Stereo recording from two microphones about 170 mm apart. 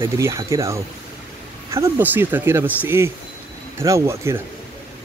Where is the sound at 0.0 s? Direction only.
15° right (ahead or behind).